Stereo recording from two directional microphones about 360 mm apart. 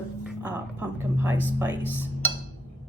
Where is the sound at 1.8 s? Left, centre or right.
Centre.